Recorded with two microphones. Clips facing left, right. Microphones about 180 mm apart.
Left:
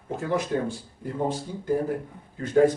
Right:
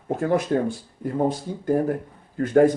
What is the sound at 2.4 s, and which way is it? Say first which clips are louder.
Speech: right 3 dB; 55° right (ahead or behind).